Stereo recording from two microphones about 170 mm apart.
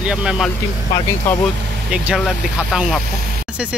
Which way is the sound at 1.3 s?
10° left (ahead or behind).